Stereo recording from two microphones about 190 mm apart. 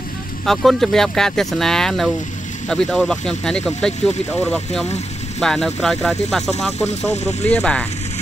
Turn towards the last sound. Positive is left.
turn(degrees=5)  # may be behind; listen again after turning